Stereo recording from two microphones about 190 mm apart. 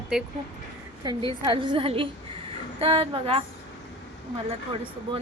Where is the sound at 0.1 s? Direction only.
5° right (ahead or behind).